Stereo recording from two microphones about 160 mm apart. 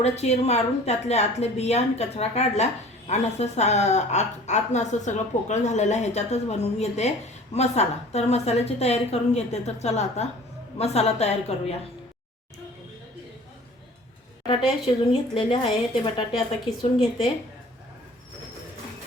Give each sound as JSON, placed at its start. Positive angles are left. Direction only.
{"t": 0.0, "sound": "a woman's voice", "side_deg": 40}
{"t": 14.4, "sound": "a woman's voice", "side_deg": 35}